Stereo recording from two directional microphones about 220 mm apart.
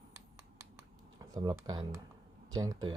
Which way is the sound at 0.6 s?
15° right (ahead or behind).